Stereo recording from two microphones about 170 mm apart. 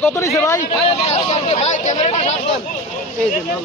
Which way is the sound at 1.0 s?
35° left (ahead or behind).